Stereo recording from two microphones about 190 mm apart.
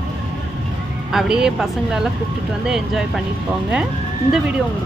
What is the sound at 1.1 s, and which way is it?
A woman's voice, 5° right (ahead or behind).